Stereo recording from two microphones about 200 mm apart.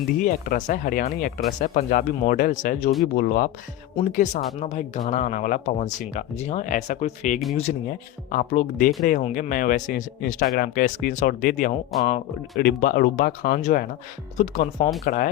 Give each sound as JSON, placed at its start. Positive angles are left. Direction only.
{"t": 0.2, "sound": "speech", "side_deg": 40}
{"t": 11.9, "sound": "speech", "side_deg": 0}
{"t": 12.5, "sound": "speech", "side_deg": 50}